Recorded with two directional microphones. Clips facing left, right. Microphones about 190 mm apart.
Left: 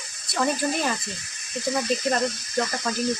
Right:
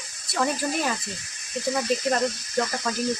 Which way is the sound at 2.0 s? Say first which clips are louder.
Even; centre (ahead or behind).